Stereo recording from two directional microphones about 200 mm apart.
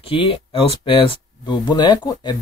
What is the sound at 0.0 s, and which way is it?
Speech, 25° left (ahead or behind).